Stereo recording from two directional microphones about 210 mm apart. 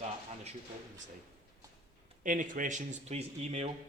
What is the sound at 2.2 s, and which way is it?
Speech, 40° right (ahead or behind).